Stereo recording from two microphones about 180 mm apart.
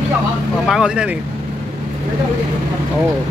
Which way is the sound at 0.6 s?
5° right (ahead or behind).